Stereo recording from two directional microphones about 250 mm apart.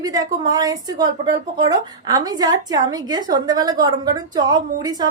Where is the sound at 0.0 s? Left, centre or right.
Centre.